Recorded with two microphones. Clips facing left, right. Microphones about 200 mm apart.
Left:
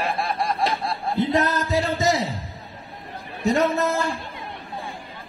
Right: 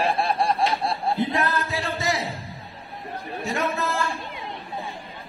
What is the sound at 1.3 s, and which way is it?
Music, 40° left (ahead or behind).